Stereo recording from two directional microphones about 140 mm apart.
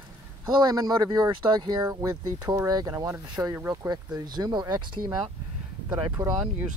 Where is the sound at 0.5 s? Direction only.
30° right (ahead or behind).